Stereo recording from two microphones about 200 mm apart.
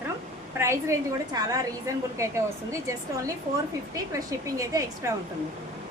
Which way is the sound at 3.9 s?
15° right (ahead or behind).